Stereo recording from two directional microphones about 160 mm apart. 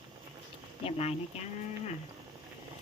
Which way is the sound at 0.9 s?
40° left (ahead or behind).